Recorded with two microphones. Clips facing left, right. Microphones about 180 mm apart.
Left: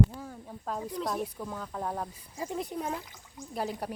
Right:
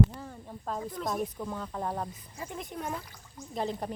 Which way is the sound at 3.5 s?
5° left (ahead or behind).